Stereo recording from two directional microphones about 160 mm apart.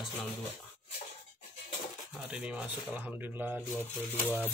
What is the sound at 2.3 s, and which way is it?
Speech, 5° right (ahead or behind).